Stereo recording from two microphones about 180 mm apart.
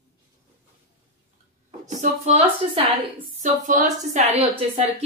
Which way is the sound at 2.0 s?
40° right (ahead or behind).